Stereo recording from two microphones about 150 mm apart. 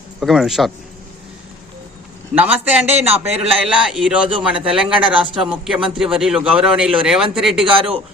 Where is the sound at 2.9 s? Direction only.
45° right (ahead or behind).